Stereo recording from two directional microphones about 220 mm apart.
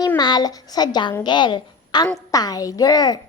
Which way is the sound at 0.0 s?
20° left (ahead or behind).